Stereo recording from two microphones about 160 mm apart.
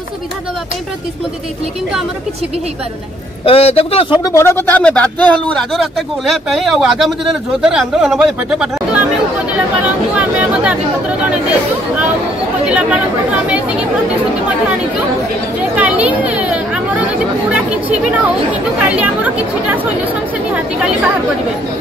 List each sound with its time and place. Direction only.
3.4 s speech: 40° left (ahead or behind)
4.2 s a man's voice: 20° left (ahead or behind); by 9.0 s 5° right (ahead or behind)
10.1 s speech: 10° right (ahead or behind)
12.6 s speech: 5° right (ahead or behind)
15.7 s a sound: 10° right (ahead or behind)
17.5 s speech: 10° right (ahead or behind)